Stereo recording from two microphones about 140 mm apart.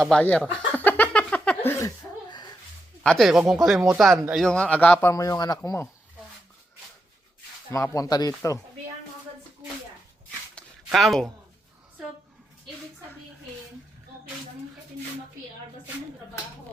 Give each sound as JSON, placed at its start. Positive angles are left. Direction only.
{"t": 0.0, "sound": "a man's voice", "side_deg": 5}
{"t": 0.7, "sound": "a sound", "side_deg": 15}
{"t": 3.0, "sound": "a man's voice", "side_deg": 5}
{"t": 7.7, "sound": "speech", "side_deg": 25}
{"t": 8.3, "sound": "a man's voice", "side_deg": 15}
{"t": 10.8, "sound": "speech", "side_deg": 0}